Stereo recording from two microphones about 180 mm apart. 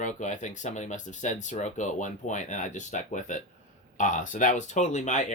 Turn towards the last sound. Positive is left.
turn(degrees=40)  # may be behind; listen again after turning